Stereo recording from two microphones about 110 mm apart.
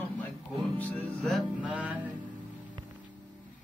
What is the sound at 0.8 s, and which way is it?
Speech, 15° left (ahead or behind).